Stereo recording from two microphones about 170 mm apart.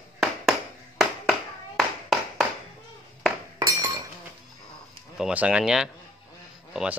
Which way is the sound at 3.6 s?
20° right (ahead or behind).